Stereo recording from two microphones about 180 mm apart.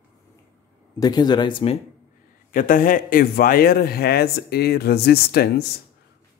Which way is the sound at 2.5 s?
50° left (ahead or behind).